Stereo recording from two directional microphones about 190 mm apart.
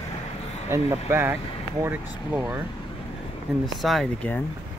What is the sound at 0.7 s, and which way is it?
Speech, 10° right (ahead or behind).